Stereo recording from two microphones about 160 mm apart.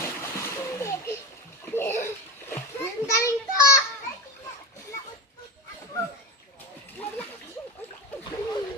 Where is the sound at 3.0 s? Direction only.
20° left (ahead or behind).